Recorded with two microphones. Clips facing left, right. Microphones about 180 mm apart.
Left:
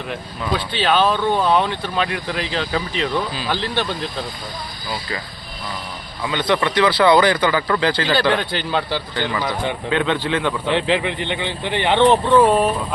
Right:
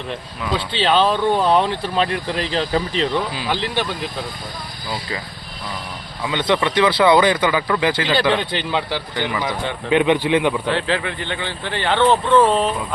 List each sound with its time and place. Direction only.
0.7 s speech: 30° right (ahead or behind)
3.3 s speech: 15° right (ahead or behind)
6.2 s speech: 20° right (ahead or behind)
10.7 s speech: 20° left (ahead or behind)